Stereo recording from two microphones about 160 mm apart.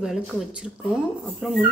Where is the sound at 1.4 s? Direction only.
Centre (ahead or behind).